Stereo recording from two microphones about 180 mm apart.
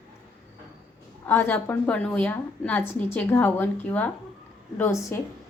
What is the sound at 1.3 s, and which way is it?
A woman's voice, 10° left (ahead or behind).